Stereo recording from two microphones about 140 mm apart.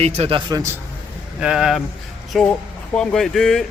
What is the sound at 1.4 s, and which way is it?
Speech, 5° right (ahead or behind).